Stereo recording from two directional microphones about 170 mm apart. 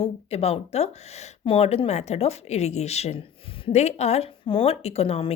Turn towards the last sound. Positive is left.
turn(degrees=35)  # may be behind; listen again after turning